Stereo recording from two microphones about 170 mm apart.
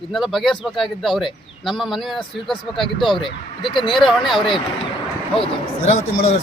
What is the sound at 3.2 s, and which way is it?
Speech, 30° left (ahead or behind).